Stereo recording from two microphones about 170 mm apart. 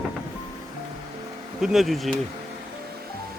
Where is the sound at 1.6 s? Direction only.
Centre (ahead or behind).